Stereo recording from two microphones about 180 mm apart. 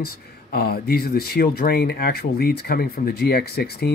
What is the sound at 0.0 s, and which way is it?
Speech, 60° left (ahead or behind).